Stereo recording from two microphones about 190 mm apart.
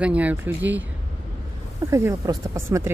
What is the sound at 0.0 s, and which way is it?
Speech, 10° right (ahead or behind).